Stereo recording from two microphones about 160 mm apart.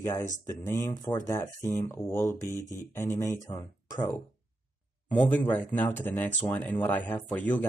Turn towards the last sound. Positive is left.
turn(degrees=10)  # may be behind; listen again after turning